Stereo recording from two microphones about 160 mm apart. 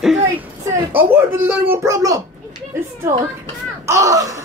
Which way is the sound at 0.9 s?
15° right (ahead or behind).